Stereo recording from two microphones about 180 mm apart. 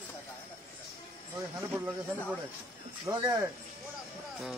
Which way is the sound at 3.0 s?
25° right (ahead or behind).